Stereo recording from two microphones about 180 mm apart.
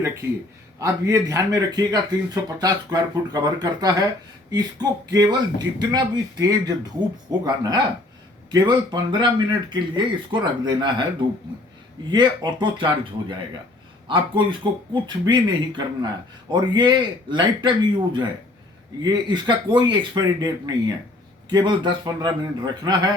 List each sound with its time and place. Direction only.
0.8 s speech: 20° right (ahead or behind)
12.1 s speech: 25° right (ahead or behind)